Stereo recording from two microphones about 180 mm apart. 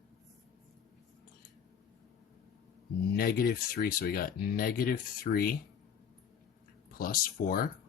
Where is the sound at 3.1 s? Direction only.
60° left (ahead or behind).